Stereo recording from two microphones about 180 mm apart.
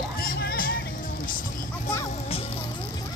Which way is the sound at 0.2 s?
55° left (ahead or behind).